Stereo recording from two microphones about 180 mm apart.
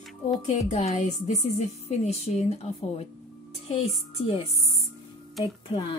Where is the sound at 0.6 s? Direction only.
40° left (ahead or behind).